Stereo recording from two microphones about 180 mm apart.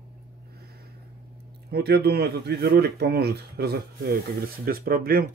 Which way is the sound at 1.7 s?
60° right (ahead or behind).